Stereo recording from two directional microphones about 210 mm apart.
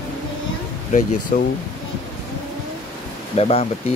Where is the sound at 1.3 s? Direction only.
40° left (ahead or behind).